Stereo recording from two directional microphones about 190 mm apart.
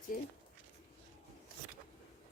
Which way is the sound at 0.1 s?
50° left (ahead or behind).